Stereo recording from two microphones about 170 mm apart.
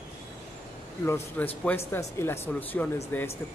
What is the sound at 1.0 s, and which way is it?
Speech, 15° left (ahead or behind).